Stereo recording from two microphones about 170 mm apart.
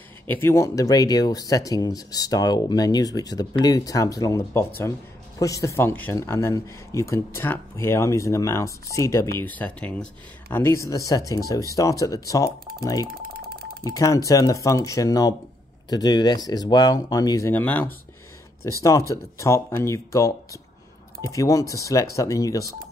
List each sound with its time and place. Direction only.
0.3 s speech: 15° left (ahead or behind)
13.3 s a sound: 65° right (ahead or behind)
13.8 s speech: 20° left (ahead or behind)